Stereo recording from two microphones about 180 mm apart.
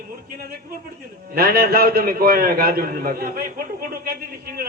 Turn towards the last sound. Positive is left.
turn(degrees=-55)  # may be behind; listen again after turning